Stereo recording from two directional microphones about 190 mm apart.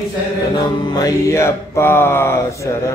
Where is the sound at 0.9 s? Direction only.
15° left (ahead or behind).